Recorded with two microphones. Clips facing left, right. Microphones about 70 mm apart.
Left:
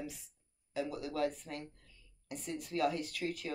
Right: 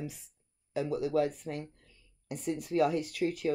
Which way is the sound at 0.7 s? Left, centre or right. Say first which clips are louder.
Right 8 dB; centre.